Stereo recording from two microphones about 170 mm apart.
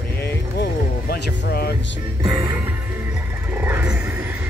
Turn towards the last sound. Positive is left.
turn(degrees=-10)  # may be behind; listen again after turning